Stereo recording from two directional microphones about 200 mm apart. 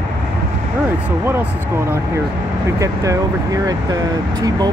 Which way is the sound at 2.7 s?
15° right (ahead or behind).